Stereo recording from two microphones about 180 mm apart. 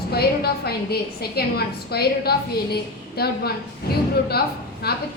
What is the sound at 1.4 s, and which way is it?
A woman's voice, 60° left (ahead or behind).